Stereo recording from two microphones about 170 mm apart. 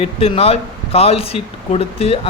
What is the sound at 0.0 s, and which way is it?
Speech, 35° left (ahead or behind).